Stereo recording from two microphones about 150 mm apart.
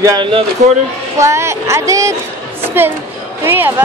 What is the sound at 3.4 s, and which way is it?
Speech, 15° right (ahead or behind).